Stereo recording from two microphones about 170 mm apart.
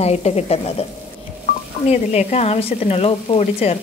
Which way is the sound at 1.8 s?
40° left (ahead or behind).